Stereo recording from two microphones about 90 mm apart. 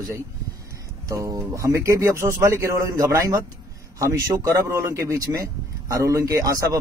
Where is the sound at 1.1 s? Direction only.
35° right (ahead or behind).